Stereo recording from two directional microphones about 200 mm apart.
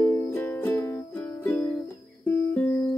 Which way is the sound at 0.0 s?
10° left (ahead or behind).